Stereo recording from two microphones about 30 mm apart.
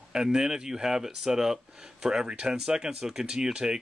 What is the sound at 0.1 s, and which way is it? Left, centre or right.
Speech, right.